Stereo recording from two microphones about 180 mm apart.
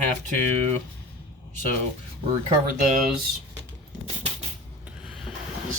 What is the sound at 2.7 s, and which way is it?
Speech, 45° right (ahead or behind).